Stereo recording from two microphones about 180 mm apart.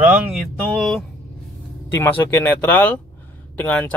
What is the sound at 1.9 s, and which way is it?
Speech, 10° left (ahead or behind).